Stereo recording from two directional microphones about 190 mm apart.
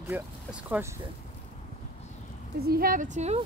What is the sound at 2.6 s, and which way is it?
Speech, 50° right (ahead or behind).